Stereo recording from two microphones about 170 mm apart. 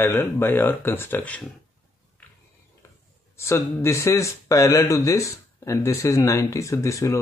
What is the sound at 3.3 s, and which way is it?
Speech, 15° left (ahead or behind).